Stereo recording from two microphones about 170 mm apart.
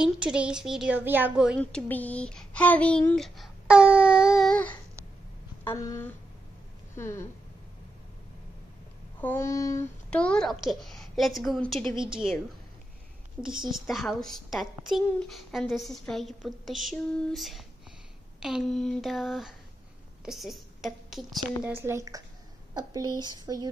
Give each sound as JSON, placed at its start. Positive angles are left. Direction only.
{"t": 0.0, "sound": "a child's voice", "side_deg": -5}
{"t": 1.6, "sound": "speech", "side_deg": 10}
{"t": 5.6, "sound": "speech", "side_deg": 15}
{"t": 9.2, "sound": "a child's voice", "side_deg": 15}
{"t": 13.7, "sound": "a child's voice", "side_deg": 0}
{"t": 21.6, "sound": "speech", "side_deg": -15}